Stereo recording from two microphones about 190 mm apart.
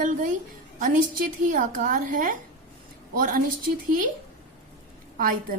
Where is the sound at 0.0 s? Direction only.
45° right (ahead or behind).